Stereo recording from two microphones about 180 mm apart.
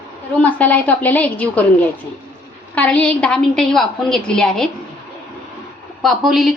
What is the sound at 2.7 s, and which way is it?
A woman's voice, 10° left (ahead or behind).